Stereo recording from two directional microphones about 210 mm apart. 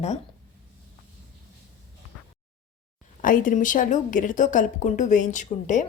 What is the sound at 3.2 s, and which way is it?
A woman's voice, 40° left (ahead or behind).